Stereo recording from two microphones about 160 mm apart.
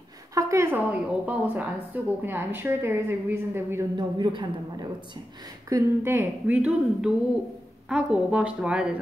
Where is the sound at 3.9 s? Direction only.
30° right (ahead or behind); by 8.9 s 5° right (ahead or behind).